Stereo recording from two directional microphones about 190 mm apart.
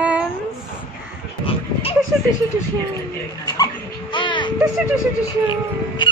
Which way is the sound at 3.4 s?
20° left (ahead or behind).